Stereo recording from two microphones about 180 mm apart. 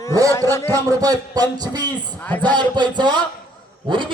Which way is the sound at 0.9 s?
20° right (ahead or behind).